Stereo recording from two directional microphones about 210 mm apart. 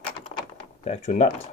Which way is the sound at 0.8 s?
30° left (ahead or behind).